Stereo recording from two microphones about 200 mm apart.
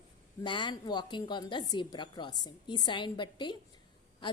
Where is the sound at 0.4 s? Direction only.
25° left (ahead or behind).